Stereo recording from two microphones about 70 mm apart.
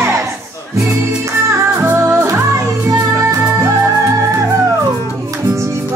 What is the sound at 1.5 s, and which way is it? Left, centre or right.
Music, right.